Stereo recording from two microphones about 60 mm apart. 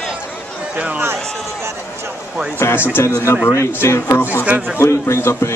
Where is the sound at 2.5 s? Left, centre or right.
Left.